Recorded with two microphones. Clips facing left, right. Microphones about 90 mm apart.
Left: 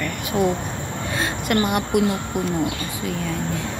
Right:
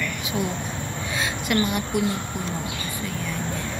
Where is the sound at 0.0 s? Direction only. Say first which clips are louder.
Left 6 dB; 50° left (ahead or behind).